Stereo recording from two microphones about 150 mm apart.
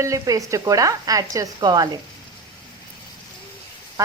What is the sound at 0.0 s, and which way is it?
Sizzle, 20° right (ahead or behind).